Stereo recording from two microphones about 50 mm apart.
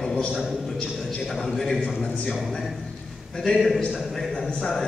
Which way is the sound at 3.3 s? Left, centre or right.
Centre.